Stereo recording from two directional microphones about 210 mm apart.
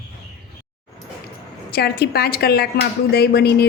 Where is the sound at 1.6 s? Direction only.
50° left (ahead or behind).